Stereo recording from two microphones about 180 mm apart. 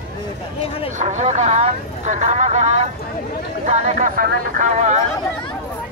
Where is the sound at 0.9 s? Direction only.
40° right (ahead or behind).